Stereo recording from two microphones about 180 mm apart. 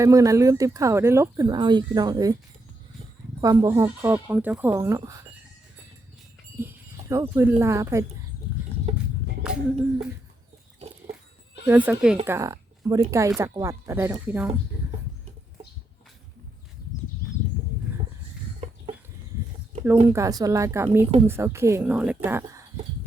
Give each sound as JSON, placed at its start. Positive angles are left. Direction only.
{"t": 0.0, "sound": "speech", "side_deg": -15}
{"t": 3.4, "sound": "speech", "side_deg": -20}
{"t": 6.6, "sound": "speech", "side_deg": -15}
{"t": 11.6, "sound": "speech", "side_deg": -10}
{"t": 18.6, "sound": "chicken", "side_deg": -35}
{"t": 20.1, "sound": "speech", "side_deg": -15}